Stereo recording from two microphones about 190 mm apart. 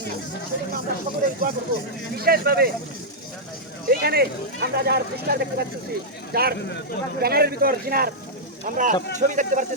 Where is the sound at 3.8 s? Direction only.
55° right (ahead or behind).